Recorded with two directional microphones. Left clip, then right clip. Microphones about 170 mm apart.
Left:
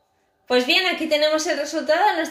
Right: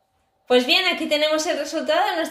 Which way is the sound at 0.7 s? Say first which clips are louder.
Even; 30° right (ahead or behind).